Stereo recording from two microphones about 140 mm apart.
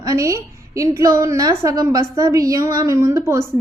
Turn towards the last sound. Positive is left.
turn(degrees=-20)  # may be behind; listen again after turning